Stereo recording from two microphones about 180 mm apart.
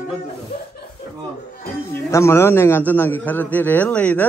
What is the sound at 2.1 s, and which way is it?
A man's voice, 15° left (ahead or behind).